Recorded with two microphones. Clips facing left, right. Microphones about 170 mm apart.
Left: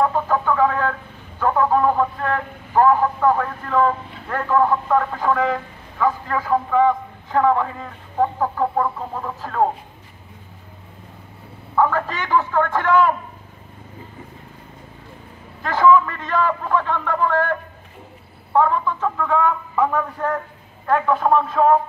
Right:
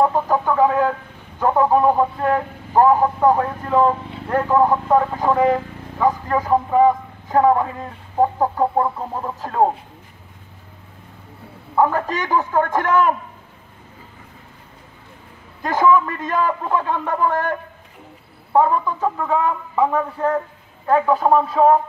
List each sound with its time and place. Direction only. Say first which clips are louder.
0.0 s a man's voice: right 2 dB; 15° right (ahead or behind)
6.7 s a man's voice: right 2 dB; 40° right (ahead or behind)
8.2 s a man's voice: right 2 dB; 25° right (ahead or behind)
11.7 s a sound: right 1 dB; 20° right (ahead or behind)
12.1 s speech: right 1 dB; 40° right (ahead or behind)
16.1 s a man's voice: even; 45° right (ahead or behind)
16.6 s a man's voice: even; 15° right (ahead or behind)
18.5 s a man's voice: right 1 dB; 20° right (ahead or behind)
21.6 s a man's voice: right 2 dB; 20° right (ahead or behind)